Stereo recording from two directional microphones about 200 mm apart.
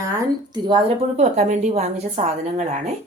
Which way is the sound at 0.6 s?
25° right (ahead or behind).